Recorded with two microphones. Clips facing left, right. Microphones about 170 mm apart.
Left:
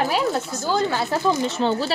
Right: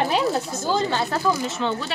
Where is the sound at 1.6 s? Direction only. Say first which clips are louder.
Left 4 dB; 35° left (ahead or behind).